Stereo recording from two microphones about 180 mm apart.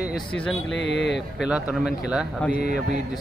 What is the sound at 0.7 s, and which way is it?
Speech, 85° left.